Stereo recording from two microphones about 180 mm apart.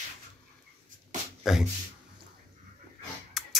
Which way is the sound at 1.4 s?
Centre (ahead or behind).